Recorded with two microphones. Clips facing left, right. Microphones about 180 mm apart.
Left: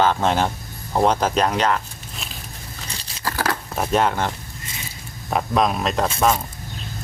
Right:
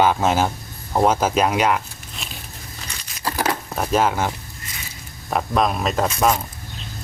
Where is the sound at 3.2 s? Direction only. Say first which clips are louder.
Right 1 dB; 20° right (ahead or behind).